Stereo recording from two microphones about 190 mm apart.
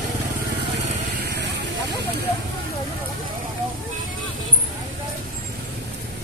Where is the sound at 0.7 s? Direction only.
60° right (ahead or behind).